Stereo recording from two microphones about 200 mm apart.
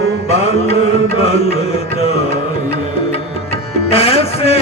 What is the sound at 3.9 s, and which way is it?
Music, 30° left (ahead or behind).